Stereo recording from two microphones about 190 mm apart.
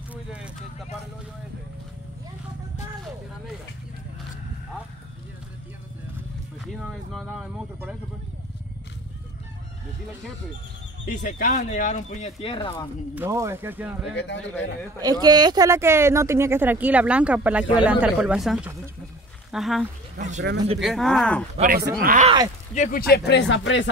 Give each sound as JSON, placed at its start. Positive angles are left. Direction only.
{"t": 0.1, "sound": "a sound", "side_deg": -5}
{"t": 6.6, "sound": "speech", "side_deg": 0}
{"t": 11.1, "sound": "speech", "side_deg": 45}
{"t": 13.1, "sound": "speech", "side_deg": -15}
{"t": 14.1, "sound": "a man's voice", "side_deg": 70}
{"t": 15.0, "sound": "speech", "side_deg": -20}
{"t": 20.2, "sound": "speech", "side_deg": -40}
{"t": 20.8, "sound": "speech", "side_deg": 0}
{"t": 21.5, "sound": "speech", "side_deg": -45}
{"t": 22.8, "sound": "speech", "side_deg": 45}